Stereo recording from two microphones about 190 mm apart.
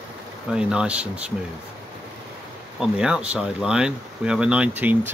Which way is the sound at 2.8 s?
5° right (ahead or behind).